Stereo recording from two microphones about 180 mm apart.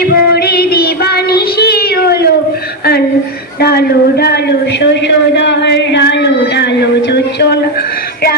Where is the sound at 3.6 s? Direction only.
60° left (ahead or behind).